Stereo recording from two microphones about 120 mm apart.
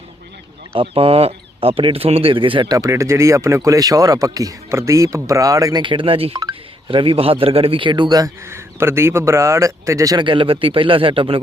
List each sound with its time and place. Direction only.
0.7 s speech: 50° right (ahead or behind)
2.7 s speech: 25° right (ahead or behind)
5.8 s speech: 45° right (ahead or behind)
8.4 s speech: 20° right (ahead or behind)
10.2 s speech: 45° right (ahead or behind)